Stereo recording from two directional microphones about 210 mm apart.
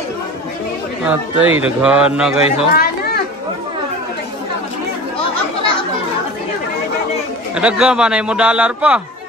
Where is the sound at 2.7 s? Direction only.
45° left (ahead or behind).